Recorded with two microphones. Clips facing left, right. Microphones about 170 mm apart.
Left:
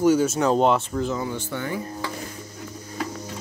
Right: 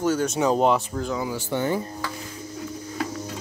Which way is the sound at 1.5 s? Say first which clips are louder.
Right 4 dB; 30° right (ahead or behind).